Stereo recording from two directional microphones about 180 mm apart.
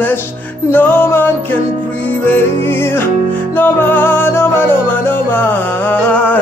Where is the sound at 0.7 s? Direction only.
10° left (ahead or behind).